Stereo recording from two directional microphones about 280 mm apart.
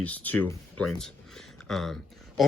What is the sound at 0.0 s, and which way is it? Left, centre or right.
Speech, centre.